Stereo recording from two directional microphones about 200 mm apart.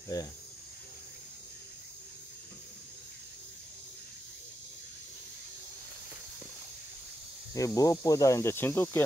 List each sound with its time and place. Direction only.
7.5 s speech: 15° left (ahead or behind)